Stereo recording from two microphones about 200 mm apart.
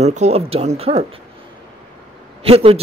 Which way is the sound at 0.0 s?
35° right (ahead or behind).